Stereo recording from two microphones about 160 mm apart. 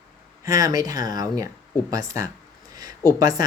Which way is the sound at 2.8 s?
25° right (ahead or behind).